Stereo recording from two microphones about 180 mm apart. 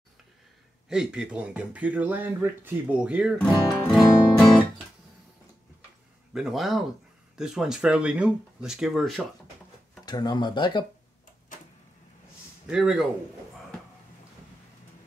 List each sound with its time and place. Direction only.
0.8 s speech: 5° right (ahead or behind)
3.8 s music: centre (ahead or behind)
6.3 s speech: centre (ahead or behind)
10.0 s speech: 25° left (ahead or behind)
12.6 s speech: 5° right (ahead or behind)